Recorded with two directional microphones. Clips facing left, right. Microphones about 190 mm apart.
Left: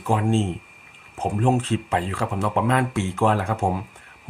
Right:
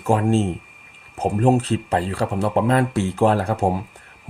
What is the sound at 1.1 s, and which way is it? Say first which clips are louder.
Speech: right 4 dB; 40° right (ahead or behind).